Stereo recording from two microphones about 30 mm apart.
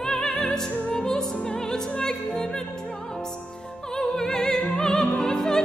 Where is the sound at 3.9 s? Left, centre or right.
Centre.